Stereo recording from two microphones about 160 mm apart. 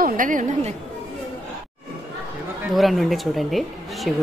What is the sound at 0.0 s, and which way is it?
Speech, 55° right (ahead or behind).